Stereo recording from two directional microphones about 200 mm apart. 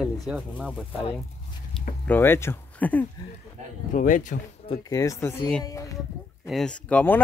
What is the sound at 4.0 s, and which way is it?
Speech, 40° left (ahead or behind).